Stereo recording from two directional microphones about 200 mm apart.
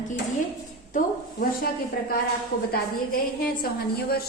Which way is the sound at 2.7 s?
50° left (ahead or behind).